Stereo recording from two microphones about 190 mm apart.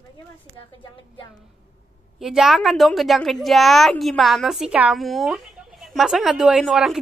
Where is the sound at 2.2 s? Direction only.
Centre (ahead or behind).